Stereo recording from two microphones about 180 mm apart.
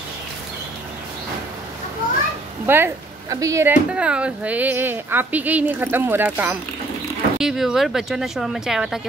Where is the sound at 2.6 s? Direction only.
10° right (ahead or behind).